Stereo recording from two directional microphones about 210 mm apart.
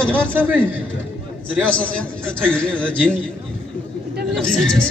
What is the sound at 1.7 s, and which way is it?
A man's voice, 5° left (ahead or behind).